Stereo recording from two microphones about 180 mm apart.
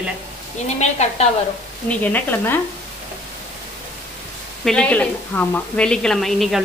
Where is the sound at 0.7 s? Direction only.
40° left (ahead or behind).